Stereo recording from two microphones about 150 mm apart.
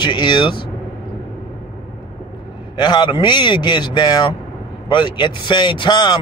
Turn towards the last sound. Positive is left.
turn(degrees=30)  # may be behind; listen again after turning